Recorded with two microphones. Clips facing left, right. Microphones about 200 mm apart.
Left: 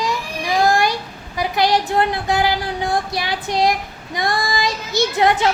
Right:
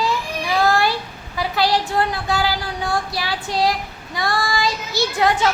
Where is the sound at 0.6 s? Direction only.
15° left (ahead or behind).